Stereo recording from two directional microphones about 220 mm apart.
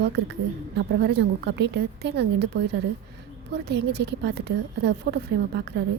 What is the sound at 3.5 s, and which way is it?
A woman's voice, 50° right (ahead or behind).